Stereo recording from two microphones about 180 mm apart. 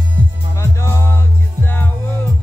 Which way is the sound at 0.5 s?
15° left (ahead or behind).